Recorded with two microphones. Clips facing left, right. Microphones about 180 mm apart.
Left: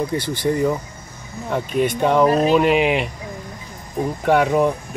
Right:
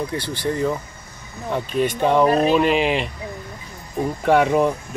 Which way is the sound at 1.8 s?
10° left (ahead or behind).